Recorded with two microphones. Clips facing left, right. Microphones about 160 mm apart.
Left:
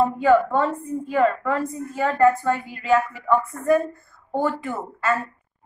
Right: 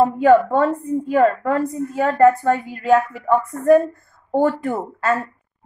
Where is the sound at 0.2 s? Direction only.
50° right (ahead or behind).